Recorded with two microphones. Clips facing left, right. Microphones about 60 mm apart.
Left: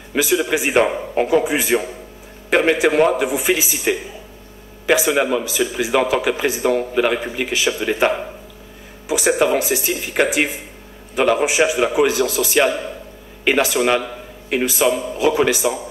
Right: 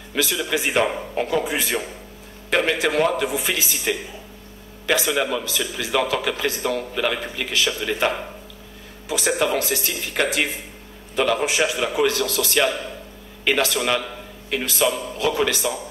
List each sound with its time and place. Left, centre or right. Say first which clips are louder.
0.1 s a man's voice: left 5 dB; centre